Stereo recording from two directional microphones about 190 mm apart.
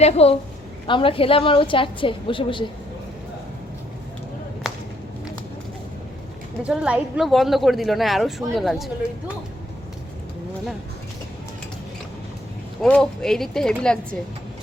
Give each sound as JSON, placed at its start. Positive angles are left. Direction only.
{"t": 0.0, "sound": "a woman's voice", "side_deg": 30}
{"t": 6.6, "sound": "speech", "side_deg": -5}
{"t": 12.8, "sound": "speech", "side_deg": 5}